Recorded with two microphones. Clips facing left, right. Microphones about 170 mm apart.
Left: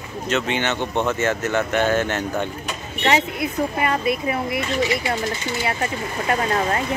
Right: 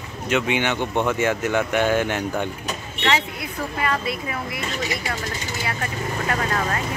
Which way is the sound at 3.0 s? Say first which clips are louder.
Left 4 dB; 20° left (ahead or behind).